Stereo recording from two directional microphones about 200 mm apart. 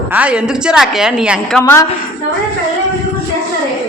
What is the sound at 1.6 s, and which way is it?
Speech, 10° left (ahead or behind).